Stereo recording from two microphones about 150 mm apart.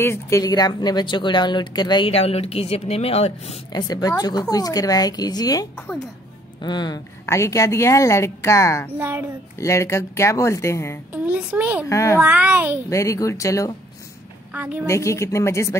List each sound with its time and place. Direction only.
0.0 s speech: 20° left (ahead or behind)
2.1 s a woman's voice: 40° left (ahead or behind)
3.7 s speech: 25° left (ahead or behind)
7.2 s speech: 20° left (ahead or behind)
8.9 s a child's voice: 15° right (ahead or behind)
9.6 s speech: 20° left (ahead or behind)
11.1 s a child's voice: 10° right (ahead or behind)
11.9 s speech: 20° left (ahead or behind)
12.2 s a child's voice: 10° right (ahead or behind)
12.9 s speech: 20° left (ahead or behind)
14.5 s a child's voice: 10° right (ahead or behind)
14.9 s speech: 20° left (ahead or behind)